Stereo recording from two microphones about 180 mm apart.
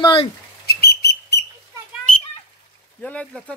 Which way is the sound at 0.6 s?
60° left (ahead or behind).